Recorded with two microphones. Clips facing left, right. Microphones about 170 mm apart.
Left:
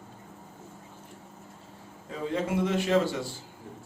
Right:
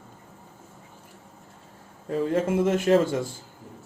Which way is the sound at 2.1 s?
50° right (ahead or behind).